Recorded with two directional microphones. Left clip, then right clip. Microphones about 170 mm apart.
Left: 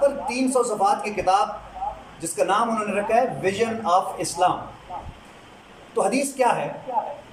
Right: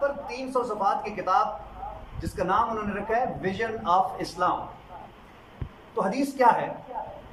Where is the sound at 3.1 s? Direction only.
15° left (ahead or behind).